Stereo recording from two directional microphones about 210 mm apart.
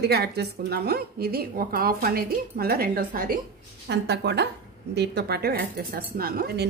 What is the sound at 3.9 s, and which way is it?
A woman's voice, 55° right (ahead or behind).